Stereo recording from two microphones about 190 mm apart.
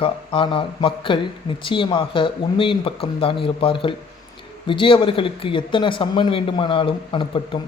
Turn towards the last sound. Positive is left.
turn(degrees=25)  # may be behind; listen again after turning